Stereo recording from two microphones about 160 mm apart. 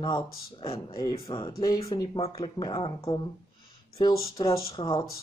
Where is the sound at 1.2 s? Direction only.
25° left (ahead or behind).